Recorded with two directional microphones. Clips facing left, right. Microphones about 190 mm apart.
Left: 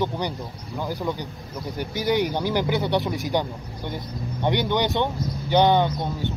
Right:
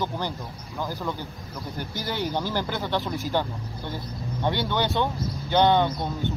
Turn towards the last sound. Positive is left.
turn(degrees=15)  # may be behind; listen again after turning